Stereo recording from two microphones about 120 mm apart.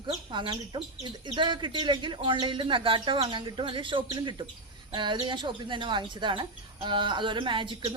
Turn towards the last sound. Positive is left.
turn(degrees=-40)  # may be behind; listen again after turning